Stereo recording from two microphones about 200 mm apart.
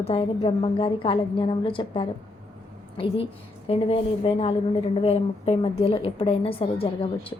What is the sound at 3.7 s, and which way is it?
A woman's voice, 30° left (ahead or behind).